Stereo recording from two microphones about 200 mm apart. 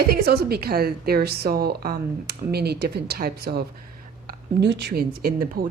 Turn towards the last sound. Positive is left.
turn(degrees=-45)  # may be behind; listen again after turning